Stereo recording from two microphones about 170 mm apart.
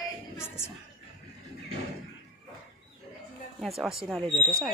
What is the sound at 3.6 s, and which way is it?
Speech, centre (ahead or behind).